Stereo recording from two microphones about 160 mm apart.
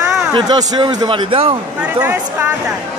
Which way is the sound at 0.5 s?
25° right (ahead or behind).